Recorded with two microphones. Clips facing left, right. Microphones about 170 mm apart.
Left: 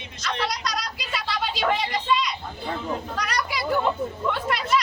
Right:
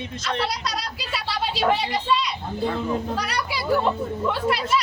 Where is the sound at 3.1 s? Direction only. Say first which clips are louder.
Right 2 dB; 30° right (ahead or behind).